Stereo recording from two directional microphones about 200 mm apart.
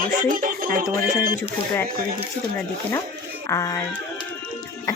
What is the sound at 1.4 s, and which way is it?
Speech, 15° left (ahead or behind).